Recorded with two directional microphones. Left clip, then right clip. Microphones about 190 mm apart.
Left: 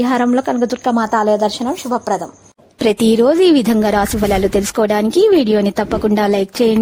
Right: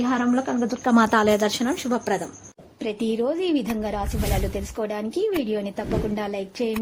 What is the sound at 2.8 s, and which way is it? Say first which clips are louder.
A woman's voice: left 13 dB; 70° left (ahead or behind).